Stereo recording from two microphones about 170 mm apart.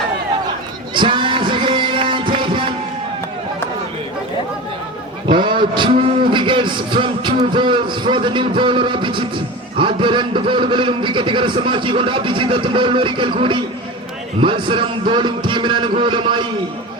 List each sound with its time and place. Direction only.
0.9 s music: 30° right (ahead or behind)
5.3 s a man's voice: 30° right (ahead or behind)